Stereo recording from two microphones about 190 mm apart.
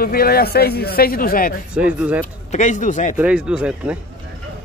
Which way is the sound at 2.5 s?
40° left (ahead or behind).